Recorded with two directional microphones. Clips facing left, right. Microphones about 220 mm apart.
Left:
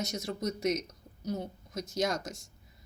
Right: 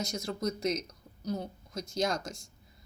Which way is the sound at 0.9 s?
20° left (ahead or behind).